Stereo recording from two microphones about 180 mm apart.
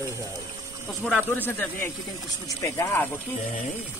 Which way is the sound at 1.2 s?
10° left (ahead or behind).